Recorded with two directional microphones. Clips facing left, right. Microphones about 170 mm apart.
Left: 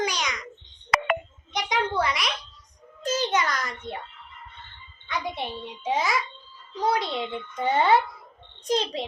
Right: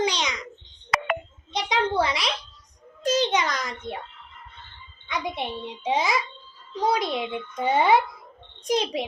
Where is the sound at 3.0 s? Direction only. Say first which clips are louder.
Right 2 dB; 15° right (ahead or behind).